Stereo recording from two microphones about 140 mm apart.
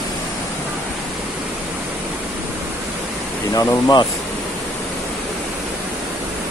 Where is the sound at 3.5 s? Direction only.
30° left (ahead or behind).